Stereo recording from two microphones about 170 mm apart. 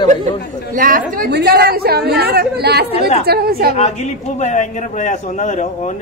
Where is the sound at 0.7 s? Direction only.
55° right (ahead or behind).